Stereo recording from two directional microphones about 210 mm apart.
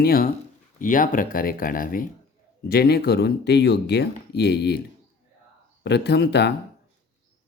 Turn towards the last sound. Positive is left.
turn(degrees=55)  # may be behind; listen again after turning